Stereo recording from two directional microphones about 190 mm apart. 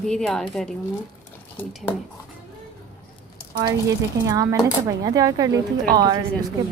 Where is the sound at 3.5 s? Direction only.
20° right (ahead or behind).